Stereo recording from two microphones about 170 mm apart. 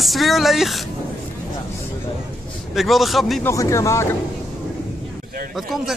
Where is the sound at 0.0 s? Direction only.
Centre (ahead or behind).